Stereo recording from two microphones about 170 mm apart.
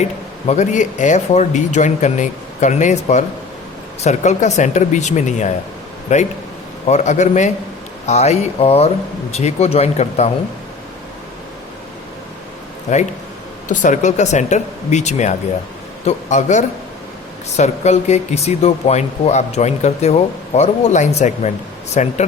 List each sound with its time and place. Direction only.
0.4 s speech: 45° left (ahead or behind)
13.7 s speech: 45° left (ahead or behind)